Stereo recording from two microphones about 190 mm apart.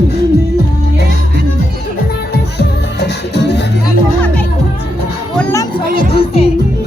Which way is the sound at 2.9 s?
60° left (ahead or behind).